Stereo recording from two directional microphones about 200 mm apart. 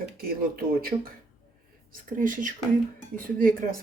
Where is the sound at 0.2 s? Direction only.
45° right (ahead or behind).